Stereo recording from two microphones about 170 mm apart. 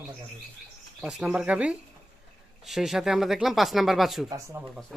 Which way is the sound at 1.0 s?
5° right (ahead or behind).